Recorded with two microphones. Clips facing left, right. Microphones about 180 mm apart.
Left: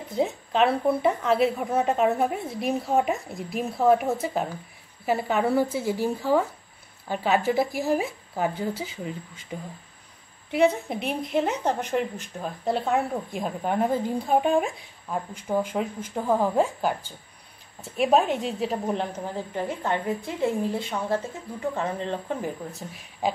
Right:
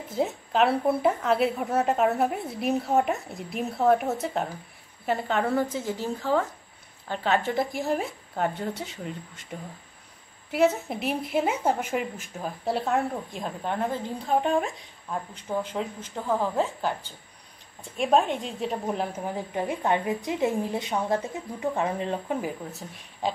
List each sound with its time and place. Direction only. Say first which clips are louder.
0.1 s a woman's voice: left 1 dB; centre (ahead or behind)
19.1 s a woman's voice: even; 15° right (ahead or behind)